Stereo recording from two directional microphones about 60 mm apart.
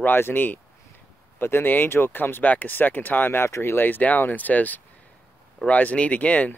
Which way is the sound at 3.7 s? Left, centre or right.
Left.